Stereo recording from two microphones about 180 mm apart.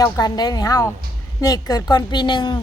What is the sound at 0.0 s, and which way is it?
Speech, 20° left (ahead or behind).